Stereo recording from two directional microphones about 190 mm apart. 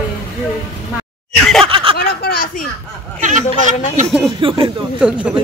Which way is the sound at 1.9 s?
55° left (ahead or behind).